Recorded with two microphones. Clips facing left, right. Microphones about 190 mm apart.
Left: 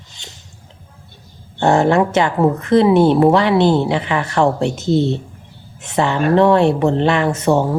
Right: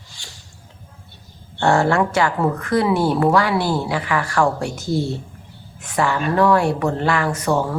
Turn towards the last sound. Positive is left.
turn(degrees=25)  # may be behind; listen again after turning